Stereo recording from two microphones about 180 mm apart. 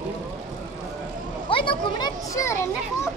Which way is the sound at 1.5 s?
30° left (ahead or behind).